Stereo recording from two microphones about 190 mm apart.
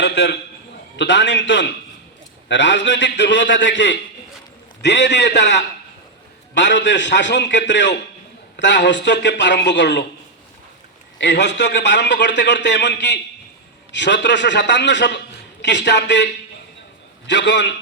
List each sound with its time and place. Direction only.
0.0 s a man's voice: 75° left (ahead or behind)
11.2 s a man's voice: 65° left (ahead or behind)